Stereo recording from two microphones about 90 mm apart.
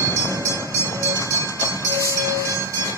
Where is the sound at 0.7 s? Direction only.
35° left (ahead or behind).